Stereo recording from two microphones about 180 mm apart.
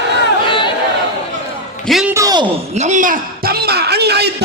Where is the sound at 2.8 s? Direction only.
45° right (ahead or behind); by 4.3 s 65° right (ahead or behind).